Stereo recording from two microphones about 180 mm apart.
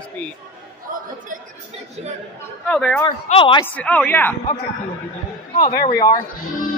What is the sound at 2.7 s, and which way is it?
Speech, 5° left (ahead or behind).